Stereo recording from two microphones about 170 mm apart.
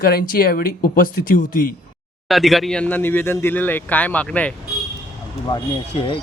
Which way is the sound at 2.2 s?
Centre (ahead or behind).